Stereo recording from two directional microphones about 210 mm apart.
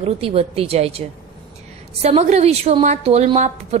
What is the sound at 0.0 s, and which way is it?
A woman's voice, 30° right (ahead or behind).